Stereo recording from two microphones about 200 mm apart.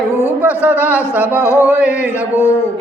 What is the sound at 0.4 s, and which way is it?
Speech, 10° right (ahead or behind).